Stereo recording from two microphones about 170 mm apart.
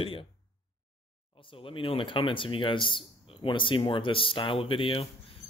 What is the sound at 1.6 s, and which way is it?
Speech, 30° left (ahead or behind).